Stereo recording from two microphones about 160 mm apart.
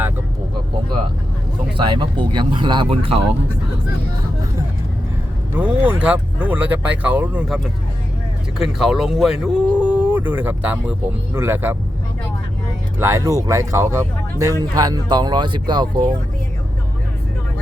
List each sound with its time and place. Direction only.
1.7 s speech: 30° right (ahead or behind)
5.5 s speech: 10° right (ahead or behind)
13.0 s speech: 20° right (ahead or behind)